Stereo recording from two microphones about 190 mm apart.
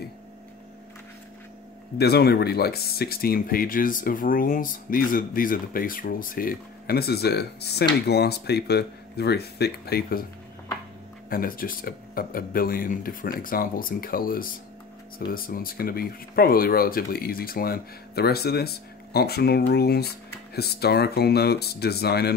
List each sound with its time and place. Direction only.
2.0 s speech: 55° left (ahead or behind)
11.2 s speech: 50° left (ahead or behind)